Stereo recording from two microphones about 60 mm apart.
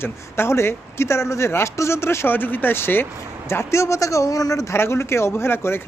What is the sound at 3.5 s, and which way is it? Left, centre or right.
A man's voice, left.